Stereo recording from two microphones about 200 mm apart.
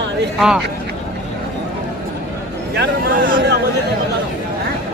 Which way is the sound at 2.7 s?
50° right (ahead or behind).